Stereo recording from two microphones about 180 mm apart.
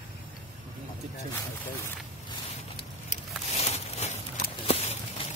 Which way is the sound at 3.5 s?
35° left (ahead or behind).